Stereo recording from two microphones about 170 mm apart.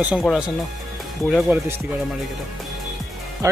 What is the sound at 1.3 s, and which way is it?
Speech, 10° right (ahead or behind).